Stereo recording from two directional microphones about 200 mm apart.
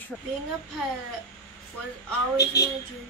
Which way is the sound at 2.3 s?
15° left (ahead or behind).